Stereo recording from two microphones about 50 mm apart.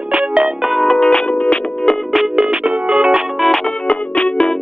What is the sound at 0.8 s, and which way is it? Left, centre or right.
Music, centre.